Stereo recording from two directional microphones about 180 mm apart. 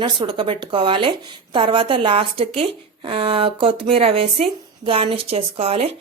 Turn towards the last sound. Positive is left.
turn(degrees=-35)  # may be behind; listen again after turning